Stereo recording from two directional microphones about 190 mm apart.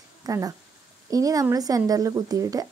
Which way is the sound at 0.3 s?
20° right (ahead or behind).